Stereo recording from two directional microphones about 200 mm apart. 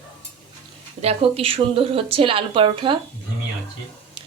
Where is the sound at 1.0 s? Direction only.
30° right (ahead or behind).